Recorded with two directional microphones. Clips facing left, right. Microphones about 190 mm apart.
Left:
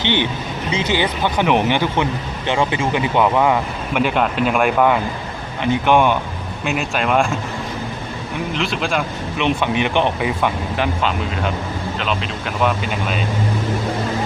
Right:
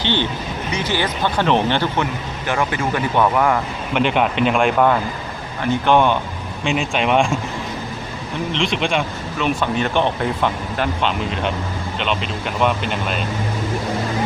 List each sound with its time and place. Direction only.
0.0 s speech: 15° left (ahead or behind)
3.9 s speech: 5° left (ahead or behind)
8.5 s speech: centre (ahead or behind)
9.4 s speech: 15° left (ahead or behind)